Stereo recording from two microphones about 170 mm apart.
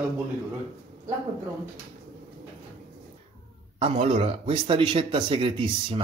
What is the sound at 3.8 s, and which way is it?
Speech, 35° right (ahead or behind).